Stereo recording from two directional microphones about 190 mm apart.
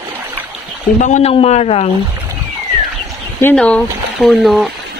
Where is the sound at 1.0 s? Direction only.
40° left (ahead or behind).